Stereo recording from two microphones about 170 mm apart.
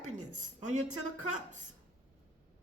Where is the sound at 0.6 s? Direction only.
45° right (ahead or behind).